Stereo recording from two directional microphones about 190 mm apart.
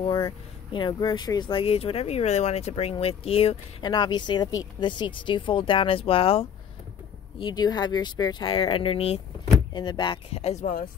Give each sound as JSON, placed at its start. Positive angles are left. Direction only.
{"t": 0.0, "sound": "speech", "side_deg": 25}